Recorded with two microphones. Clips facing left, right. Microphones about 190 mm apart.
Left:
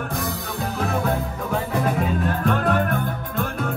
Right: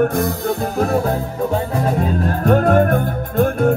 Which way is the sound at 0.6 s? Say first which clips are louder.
Right 4 dB; 40° right (ahead or behind).